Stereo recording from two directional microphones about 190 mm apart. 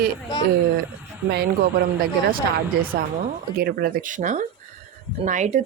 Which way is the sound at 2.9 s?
55° right (ahead or behind).